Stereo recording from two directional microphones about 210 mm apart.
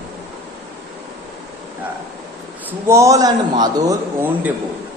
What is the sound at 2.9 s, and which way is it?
A man's voice, 15° right (ahead or behind).